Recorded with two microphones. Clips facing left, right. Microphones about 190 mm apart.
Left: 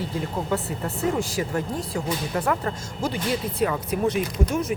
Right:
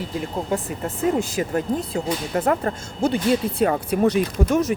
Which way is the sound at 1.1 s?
20° right (ahead or behind).